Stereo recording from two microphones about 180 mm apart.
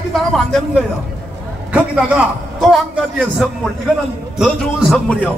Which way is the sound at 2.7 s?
Centre (ahead or behind).